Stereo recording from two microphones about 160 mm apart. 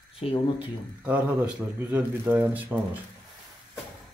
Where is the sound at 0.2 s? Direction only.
40° left (ahead or behind).